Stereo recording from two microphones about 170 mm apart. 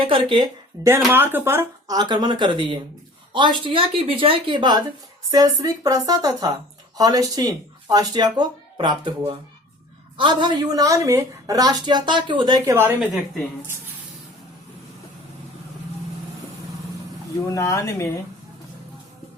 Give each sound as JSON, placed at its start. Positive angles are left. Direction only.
{"t": 0.0, "sound": "a woman's voice", "side_deg": -30}
{"t": 0.8, "sound": "a woman's voice", "side_deg": -20}
{"t": 2.0, "sound": "a woman's voice", "side_deg": -25}
{"t": 12.6, "sound": "speech", "side_deg": -15}
{"t": 17.5, "sound": "speech", "side_deg": 15}